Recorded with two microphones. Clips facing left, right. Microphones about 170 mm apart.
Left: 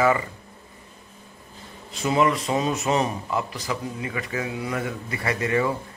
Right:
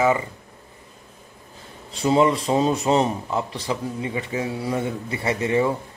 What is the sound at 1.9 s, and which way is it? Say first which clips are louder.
Speech: right 3 dB; 30° right (ahead or behind).